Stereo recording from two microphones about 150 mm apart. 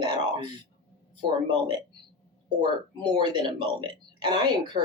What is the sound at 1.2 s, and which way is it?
Speech, 30° right (ahead or behind).